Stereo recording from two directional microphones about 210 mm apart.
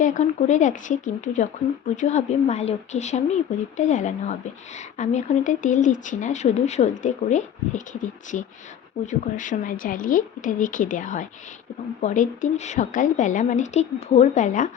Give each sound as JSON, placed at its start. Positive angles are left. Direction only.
{"t": 0.0, "sound": "speech", "side_deg": 35}